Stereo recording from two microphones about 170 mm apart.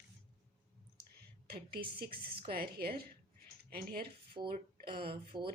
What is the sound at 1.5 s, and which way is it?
Speech, 65° right (ahead or behind).